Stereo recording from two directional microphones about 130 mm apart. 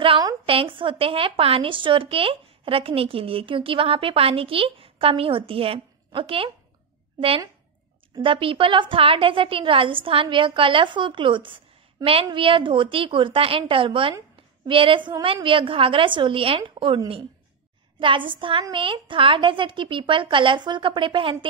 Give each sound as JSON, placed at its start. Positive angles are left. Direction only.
{"t": 0.5, "sound": "a woman's voice", "side_deg": -40}